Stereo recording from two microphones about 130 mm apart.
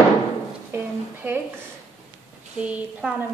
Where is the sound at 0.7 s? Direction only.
15° right (ahead or behind).